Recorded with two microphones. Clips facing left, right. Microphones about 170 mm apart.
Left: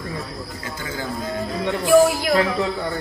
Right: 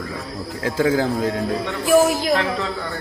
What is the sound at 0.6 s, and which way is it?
Speech, 90° right.